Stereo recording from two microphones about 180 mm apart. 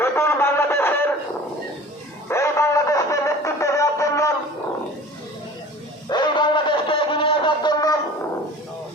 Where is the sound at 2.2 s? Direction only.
15° left (ahead or behind).